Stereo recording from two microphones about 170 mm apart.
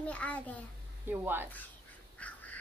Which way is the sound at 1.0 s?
10° right (ahead or behind).